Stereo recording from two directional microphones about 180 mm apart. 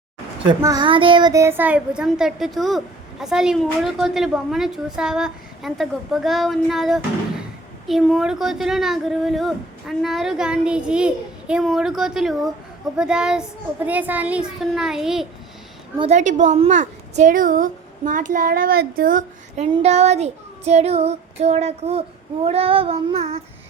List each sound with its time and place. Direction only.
0.6 s speech: 20° right (ahead or behind); by 15.3 s centre (ahead or behind)
16.0 s a woman's voice: 40° right (ahead or behind)